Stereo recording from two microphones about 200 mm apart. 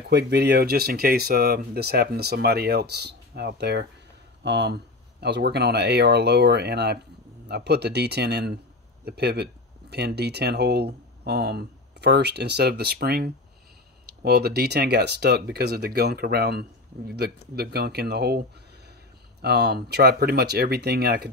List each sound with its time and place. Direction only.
0.1 s speech: 55° right (ahead or behind)
19.4 s speech: 55° right (ahead or behind)